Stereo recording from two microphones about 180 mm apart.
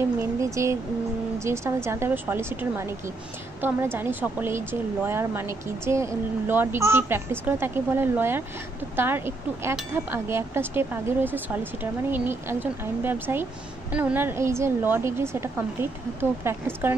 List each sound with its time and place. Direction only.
0.2 s a woman's voice: 15° right (ahead or behind)